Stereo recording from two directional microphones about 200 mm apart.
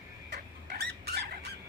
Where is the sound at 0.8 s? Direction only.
55° right (ahead or behind).